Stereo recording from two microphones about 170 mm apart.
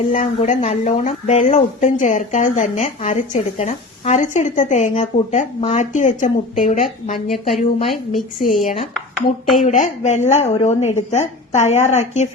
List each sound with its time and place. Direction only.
0.1 s speech: 45° left (ahead or behind)
7.3 s a woman's voice: centre (ahead or behind)
9.6 s a woman's voice: 40° left (ahead or behind)